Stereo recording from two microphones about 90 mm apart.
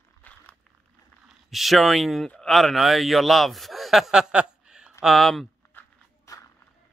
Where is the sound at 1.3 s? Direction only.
Centre (ahead or behind).